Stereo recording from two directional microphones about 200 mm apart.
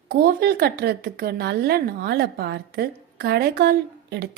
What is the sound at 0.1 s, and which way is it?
A woman's voice, 50° right (ahead or behind).